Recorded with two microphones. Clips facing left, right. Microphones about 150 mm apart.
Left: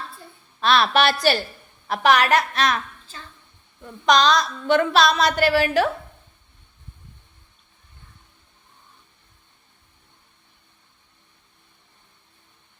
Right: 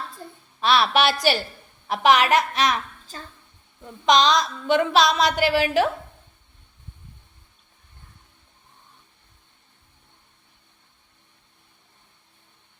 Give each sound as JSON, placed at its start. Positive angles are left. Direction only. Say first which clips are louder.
{"t": 0.6, "sound": "a woman's voice", "louder": "left 1 dB", "side_deg": -15}
{"t": 3.1, "sound": "a woman's voice", "louder": "right 4 dB", "side_deg": -40}
{"t": 4.0, "sound": "a woman's voice", "louder": "left 1 dB", "side_deg": -20}